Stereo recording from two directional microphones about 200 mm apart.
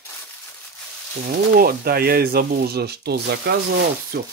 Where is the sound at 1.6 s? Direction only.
50° right (ahead or behind).